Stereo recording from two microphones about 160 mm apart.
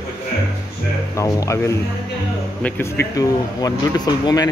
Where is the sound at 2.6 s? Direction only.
15° left (ahead or behind).